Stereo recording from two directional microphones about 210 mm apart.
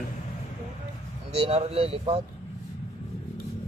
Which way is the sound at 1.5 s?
30° right (ahead or behind).